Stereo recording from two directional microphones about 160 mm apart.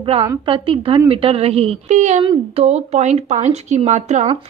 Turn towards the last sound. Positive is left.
turn(degrees=-45)  # may be behind; listen again after turning